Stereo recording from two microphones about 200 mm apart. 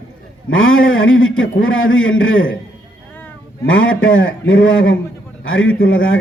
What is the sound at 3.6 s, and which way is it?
A man's voice, 80° left.